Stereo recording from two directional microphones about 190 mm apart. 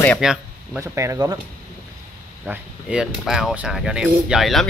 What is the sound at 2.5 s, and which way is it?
Speech, 5° right (ahead or behind).